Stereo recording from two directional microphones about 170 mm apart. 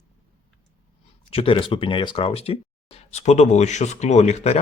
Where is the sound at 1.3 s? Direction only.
35° left (ahead or behind).